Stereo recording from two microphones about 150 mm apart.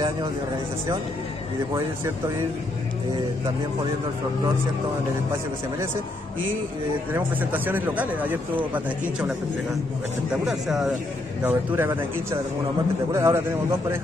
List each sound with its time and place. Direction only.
1.7 s a man's voice: 20° right (ahead or behind)
7.1 s a man's voice: 10° right (ahead or behind)
10.4 s speech: 5° right (ahead or behind)
11.4 s a man's voice: 15° right (ahead or behind)